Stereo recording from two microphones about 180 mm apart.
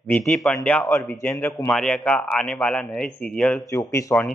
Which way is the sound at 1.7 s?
5° left (ahead or behind).